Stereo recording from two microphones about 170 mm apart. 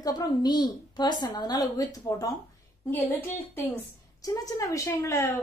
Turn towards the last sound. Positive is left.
turn(degrees=15)  # may be behind; listen again after turning